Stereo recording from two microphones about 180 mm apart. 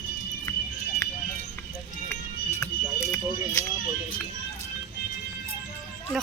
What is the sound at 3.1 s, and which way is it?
Speech, 15° left (ahead or behind).